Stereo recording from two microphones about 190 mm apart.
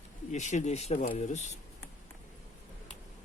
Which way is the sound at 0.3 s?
40° left (ahead or behind).